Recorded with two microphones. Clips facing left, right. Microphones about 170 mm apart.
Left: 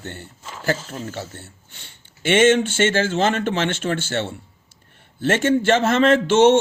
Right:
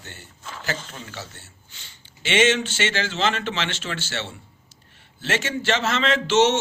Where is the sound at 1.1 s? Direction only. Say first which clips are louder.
Left 6 dB; 55° left (ahead or behind).